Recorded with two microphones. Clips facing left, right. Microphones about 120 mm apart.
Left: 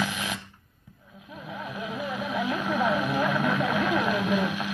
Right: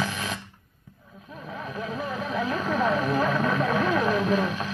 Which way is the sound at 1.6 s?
35° right (ahead or behind).